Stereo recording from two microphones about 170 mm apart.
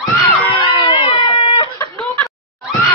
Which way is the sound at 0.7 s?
30° left (ahead or behind).